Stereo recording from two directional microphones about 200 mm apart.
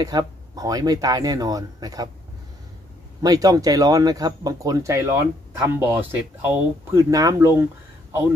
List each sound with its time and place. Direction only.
0.0 s speech: 20° right (ahead or behind)
3.2 s speech: 20° right (ahead or behind)